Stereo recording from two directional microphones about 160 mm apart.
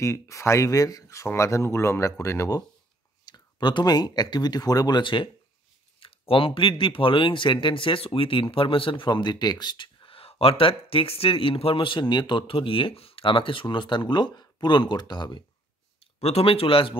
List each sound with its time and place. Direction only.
0.0 s speech: 20° left (ahead or behind)
16.0 s speech: 40° left (ahead or behind)